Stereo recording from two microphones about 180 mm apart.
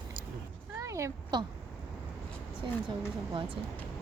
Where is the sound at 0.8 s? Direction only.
15° right (ahead or behind).